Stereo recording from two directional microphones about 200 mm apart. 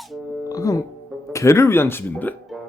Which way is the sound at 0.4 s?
15° left (ahead or behind).